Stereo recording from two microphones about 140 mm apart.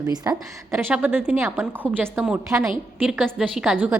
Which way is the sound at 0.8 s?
15° right (ahead or behind).